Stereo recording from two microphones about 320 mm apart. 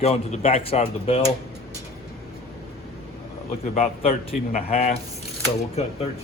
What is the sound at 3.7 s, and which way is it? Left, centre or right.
Speech, left.